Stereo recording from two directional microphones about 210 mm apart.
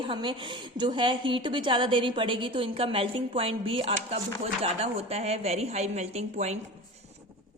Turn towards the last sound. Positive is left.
turn(degrees=-30)  # may be behind; listen again after turning